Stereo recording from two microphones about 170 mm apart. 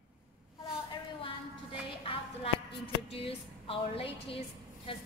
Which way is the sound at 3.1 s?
35° left (ahead or behind).